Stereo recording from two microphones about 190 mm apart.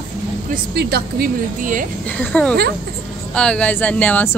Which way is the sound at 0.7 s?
60° right (ahead or behind).